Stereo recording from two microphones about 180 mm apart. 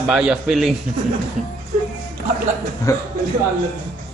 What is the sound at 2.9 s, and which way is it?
Speech, 20° left (ahead or behind).